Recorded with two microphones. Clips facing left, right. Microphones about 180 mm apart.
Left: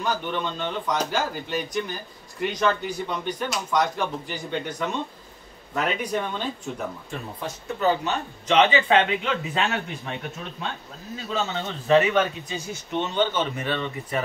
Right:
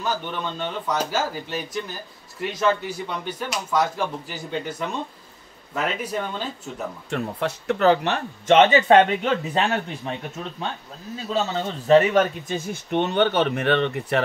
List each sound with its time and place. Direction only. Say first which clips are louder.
0.0 s speech: left 1 dB; 5° right (ahead or behind)
7.1 s speech: right 7 dB; 70° right (ahead or behind)
8.5 s speech: right 4 dB; 45° right (ahead or behind)
11.3 s speech: right 3 dB; 35° right (ahead or behind); by 14.2 s 65° right (ahead or behind)